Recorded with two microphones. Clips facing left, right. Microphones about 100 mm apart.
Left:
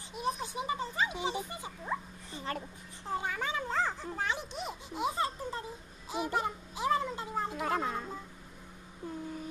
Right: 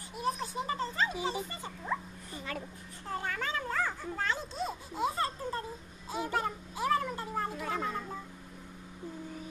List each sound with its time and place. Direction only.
0.1 s music: 20° left (ahead or behind)
2.4 s speech: 35° left (ahead or behind)
3.1 s a sound: 15° left (ahead or behind)